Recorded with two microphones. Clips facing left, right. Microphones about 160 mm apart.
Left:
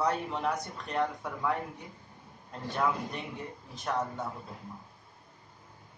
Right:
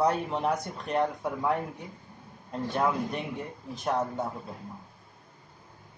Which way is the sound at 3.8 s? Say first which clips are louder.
Right 4 dB; 30° right (ahead or behind).